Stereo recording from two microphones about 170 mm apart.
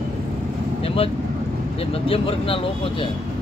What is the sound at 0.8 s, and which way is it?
Vehicle, 35° left (ahead or behind).